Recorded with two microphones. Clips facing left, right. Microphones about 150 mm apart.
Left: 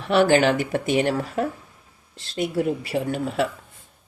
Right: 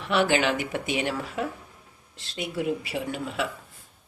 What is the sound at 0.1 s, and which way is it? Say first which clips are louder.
Speech: left 6 dB; 40° left (ahead or behind).